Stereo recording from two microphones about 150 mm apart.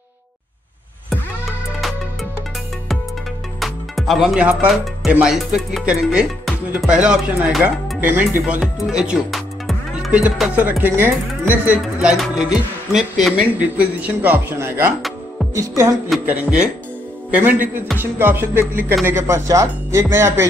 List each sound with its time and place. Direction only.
3.5 s speech: centre (ahead or behind)
15.0 s music: centre (ahead or behind)
15.5 s speech: 20° right (ahead or behind)
16.3 s speech: 10° right (ahead or behind)